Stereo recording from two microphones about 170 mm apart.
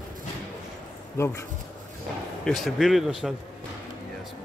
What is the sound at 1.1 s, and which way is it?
Speech, 15° left (ahead or behind).